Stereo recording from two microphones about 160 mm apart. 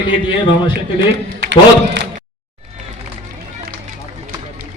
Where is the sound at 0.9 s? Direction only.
90° right.